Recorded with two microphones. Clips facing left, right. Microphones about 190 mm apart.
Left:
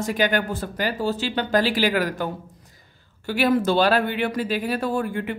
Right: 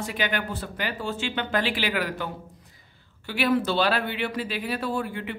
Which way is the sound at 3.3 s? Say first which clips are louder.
Left 4 dB; 45° left (ahead or behind).